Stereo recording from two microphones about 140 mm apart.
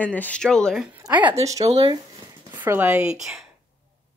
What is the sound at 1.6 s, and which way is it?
Speech, 45° right (ahead or behind).